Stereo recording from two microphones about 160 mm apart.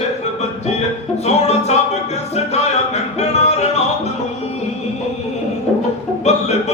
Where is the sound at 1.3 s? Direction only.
40° left (ahead or behind).